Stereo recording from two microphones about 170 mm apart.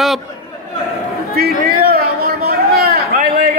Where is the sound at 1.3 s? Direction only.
60° right (ahead or behind).